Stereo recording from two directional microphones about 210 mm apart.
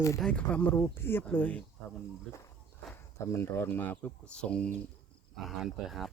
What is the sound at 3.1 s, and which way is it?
Speech, 10° left (ahead or behind).